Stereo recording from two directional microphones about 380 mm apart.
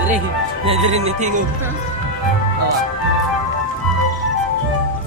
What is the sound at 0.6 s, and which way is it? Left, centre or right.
Speech, centre.